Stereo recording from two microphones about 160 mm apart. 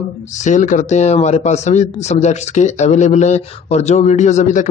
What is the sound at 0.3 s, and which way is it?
Speech, 50° left (ahead or behind).